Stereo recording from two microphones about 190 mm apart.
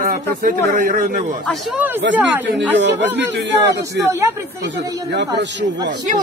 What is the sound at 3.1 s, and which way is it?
Speech, 65° right (ahead or behind).